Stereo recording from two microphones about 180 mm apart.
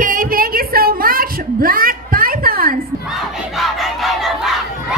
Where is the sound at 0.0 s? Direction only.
50° right (ahead or behind).